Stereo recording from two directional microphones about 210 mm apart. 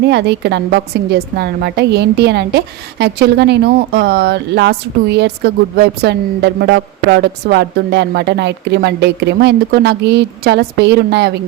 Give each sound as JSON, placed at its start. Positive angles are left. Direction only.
{"t": 0.0, "sound": "a woman's voice", "side_deg": -55}